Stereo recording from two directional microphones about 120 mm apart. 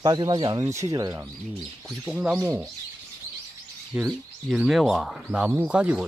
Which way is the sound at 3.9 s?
5° right (ahead or behind).